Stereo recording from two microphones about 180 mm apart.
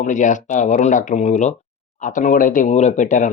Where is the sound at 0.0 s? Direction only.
45° left (ahead or behind).